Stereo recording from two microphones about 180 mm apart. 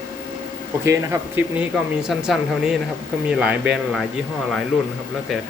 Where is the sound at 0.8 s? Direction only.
15° right (ahead or behind).